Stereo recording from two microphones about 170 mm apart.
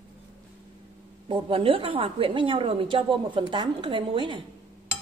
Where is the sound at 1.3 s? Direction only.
30° right (ahead or behind).